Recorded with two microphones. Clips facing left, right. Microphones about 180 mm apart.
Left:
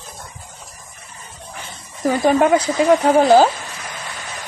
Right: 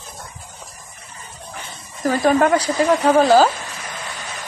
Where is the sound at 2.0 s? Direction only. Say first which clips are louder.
Left 1 dB; 15° left (ahead or behind).